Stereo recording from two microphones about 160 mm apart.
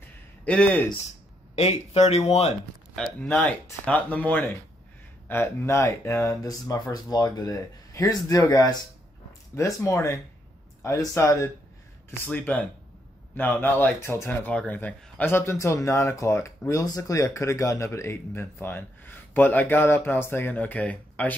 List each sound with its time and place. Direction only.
0.5 s speech: 10° left (ahead or behind)
1.5 s speech: 40° left (ahead or behind)
3.0 s speech: 5° left (ahead or behind)